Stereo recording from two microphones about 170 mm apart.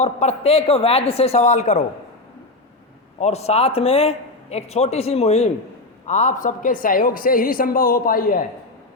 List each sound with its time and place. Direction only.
0.0 s a man's voice: 40° left (ahead or behind)
3.2 s a man's voice: 40° left (ahead or behind); by 8.4 s 55° left (ahead or behind)